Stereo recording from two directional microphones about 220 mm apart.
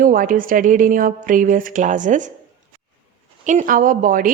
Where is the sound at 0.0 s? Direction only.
40° right (ahead or behind).